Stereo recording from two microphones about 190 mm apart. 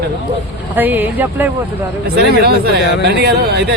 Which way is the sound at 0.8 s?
10° right (ahead or behind).